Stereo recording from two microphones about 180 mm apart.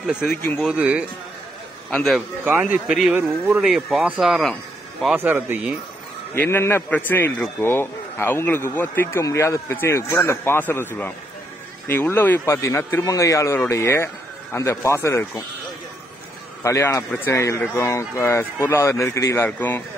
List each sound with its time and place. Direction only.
0.6 s speech: 5° right (ahead or behind)
2.1 s speech: 10° right (ahead or behind)
6.3 s speech: 10° left (ahead or behind)
16.6 s speech: 15° left (ahead or behind)